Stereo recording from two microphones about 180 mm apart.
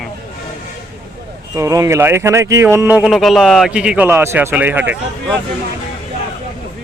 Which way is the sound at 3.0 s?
Centre (ahead or behind).